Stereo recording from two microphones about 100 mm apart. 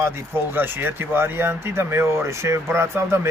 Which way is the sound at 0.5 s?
20° right (ahead or behind).